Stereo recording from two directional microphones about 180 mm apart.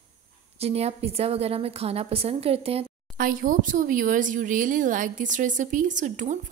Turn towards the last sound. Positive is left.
turn(degrees=-45)  # may be behind; listen again after turning